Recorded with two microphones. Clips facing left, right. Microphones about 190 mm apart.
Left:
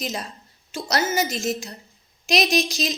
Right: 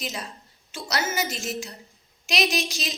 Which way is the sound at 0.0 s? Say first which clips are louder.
Left 4 dB; 40° left (ahead or behind).